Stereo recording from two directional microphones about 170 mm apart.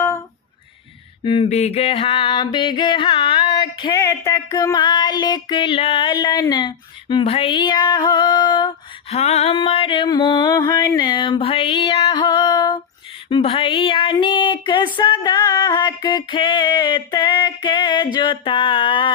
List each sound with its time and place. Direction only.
1.2 s music: 30° left (ahead or behind)
9.0 s music: 40° left (ahead or behind)